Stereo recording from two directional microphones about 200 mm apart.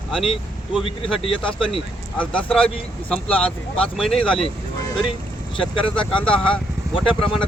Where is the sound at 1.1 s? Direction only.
25° left (ahead or behind).